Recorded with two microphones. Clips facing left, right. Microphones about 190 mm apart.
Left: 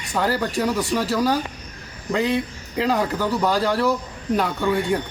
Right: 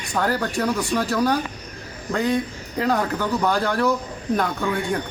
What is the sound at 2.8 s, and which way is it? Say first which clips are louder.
Speech: even; 5° left (ahead or behind).